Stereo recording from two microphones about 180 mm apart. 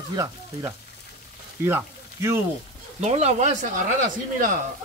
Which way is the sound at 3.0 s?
35° right (ahead or behind).